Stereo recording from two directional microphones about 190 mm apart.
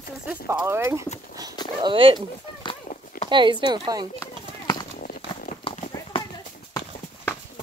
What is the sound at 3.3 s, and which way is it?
Speech, 25° right (ahead or behind).